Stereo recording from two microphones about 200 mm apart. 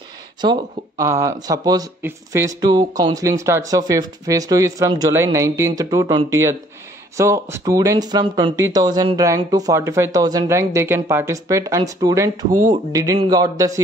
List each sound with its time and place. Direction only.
0.4 s speech: 20° right (ahead or behind)